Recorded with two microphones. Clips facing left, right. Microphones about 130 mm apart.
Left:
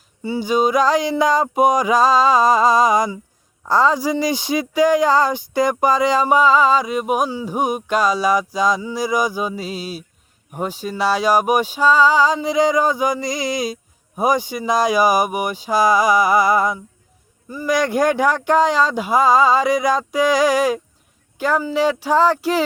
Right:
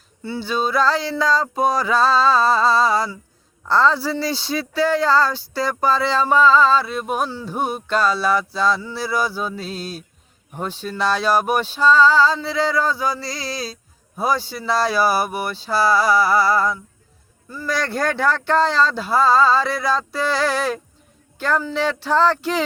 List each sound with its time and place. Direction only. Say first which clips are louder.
0.2 s speech: left 5 dB; 10° left (ahead or behind)